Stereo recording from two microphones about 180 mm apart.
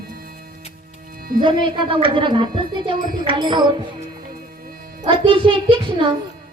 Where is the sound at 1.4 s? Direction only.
25° right (ahead or behind).